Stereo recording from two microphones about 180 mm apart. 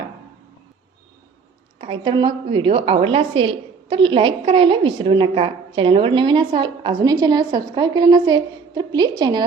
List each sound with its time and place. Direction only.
1.8 s a woman's voice: 30° right (ahead or behind)